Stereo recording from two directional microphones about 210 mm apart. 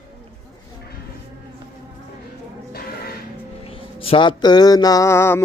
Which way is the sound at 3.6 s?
25° left (ahead or behind).